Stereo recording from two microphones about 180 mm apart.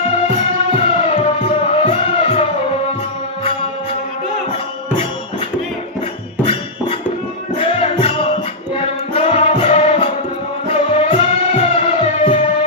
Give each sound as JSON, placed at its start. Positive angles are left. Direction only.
{"t": 0.3, "sound": "music", "side_deg": 35}
{"t": 6.4, "sound": "music", "side_deg": 30}